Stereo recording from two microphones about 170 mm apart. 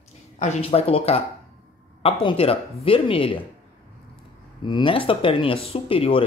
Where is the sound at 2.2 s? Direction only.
35° left (ahead or behind).